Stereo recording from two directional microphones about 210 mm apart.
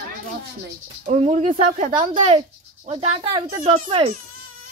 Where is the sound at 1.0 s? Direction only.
35° right (ahead or behind).